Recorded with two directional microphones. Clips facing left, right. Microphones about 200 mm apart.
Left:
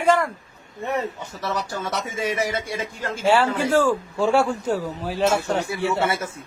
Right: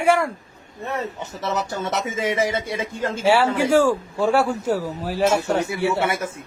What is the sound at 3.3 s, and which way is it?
A man's voice, 10° right (ahead or behind).